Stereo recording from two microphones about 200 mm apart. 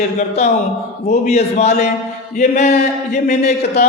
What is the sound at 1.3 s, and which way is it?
Speech, 35° left (ahead or behind).